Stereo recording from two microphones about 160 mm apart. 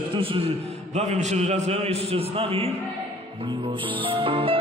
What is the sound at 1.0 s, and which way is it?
A man's voice, 45° right (ahead or behind).